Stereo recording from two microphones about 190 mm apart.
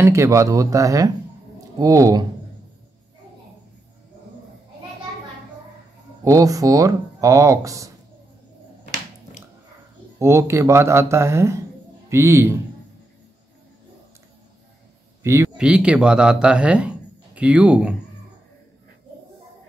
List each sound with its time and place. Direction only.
0.0 s speech: 15° right (ahead or behind)
6.2 s speech: 20° right (ahead or behind)
10.1 s speech: 15° right (ahead or behind)
15.2 s speech: 15° right (ahead or behind)